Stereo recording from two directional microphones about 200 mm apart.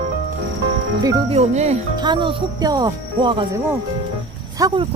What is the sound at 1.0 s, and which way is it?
Speech, 20° right (ahead or behind).